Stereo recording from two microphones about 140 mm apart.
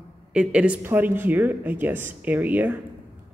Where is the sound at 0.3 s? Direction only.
5° right (ahead or behind).